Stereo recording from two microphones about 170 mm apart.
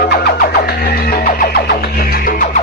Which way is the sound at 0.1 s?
65° left (ahead or behind).